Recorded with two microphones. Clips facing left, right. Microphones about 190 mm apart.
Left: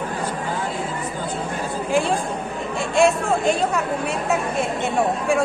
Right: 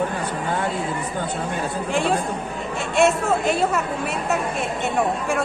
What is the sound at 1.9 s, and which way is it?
Chatter, centre (ahead or behind).